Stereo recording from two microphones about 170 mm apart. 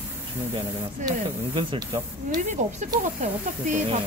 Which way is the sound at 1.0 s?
30° right (ahead or behind).